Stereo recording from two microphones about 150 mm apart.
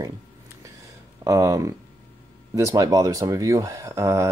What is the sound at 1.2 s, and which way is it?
Speech, 20° right (ahead or behind).